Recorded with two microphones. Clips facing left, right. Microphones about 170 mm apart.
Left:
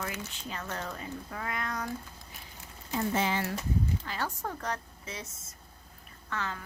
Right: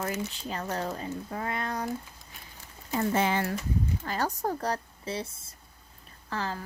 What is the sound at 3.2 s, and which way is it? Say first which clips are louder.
Speech: right 4 dB; 55° right (ahead or behind).